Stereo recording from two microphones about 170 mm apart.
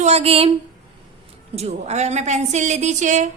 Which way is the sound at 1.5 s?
40° right (ahead or behind).